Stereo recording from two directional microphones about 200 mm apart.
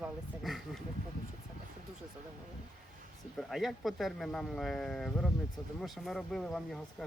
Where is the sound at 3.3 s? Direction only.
Centre (ahead or behind).